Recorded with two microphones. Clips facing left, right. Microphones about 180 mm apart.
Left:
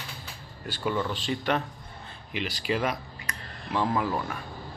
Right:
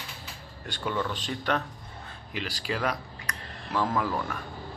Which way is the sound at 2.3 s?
40° right (ahead or behind).